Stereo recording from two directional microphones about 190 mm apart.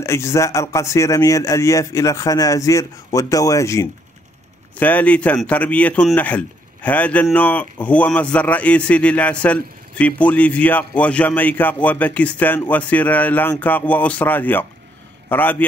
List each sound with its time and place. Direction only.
0.0 s a man's voice: 15° left (ahead or behind)